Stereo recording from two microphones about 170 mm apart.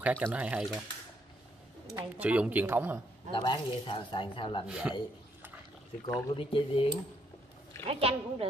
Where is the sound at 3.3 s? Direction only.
25° left (ahead or behind).